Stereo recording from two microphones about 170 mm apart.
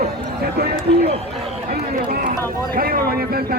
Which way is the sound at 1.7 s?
60° right (ahead or behind).